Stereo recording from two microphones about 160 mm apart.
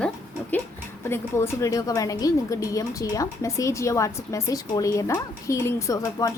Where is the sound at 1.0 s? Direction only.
15° left (ahead or behind).